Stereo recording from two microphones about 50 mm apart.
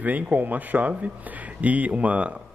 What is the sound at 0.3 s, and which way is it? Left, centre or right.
A man's voice, right.